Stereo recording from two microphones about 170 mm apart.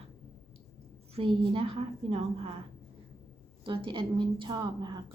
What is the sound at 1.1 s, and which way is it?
A woman's voice, 35° right (ahead or behind).